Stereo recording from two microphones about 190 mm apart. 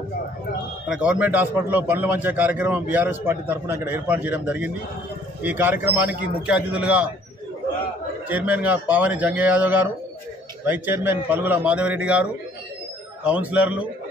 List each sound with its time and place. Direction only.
0.8 s a man's voice: 5° right (ahead or behind)
8.3 s a man's voice: 10° right (ahead or behind)